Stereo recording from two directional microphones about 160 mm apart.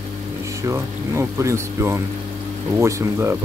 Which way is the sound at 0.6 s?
20° right (ahead or behind).